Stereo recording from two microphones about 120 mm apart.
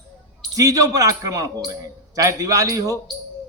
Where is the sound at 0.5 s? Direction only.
30° right (ahead or behind).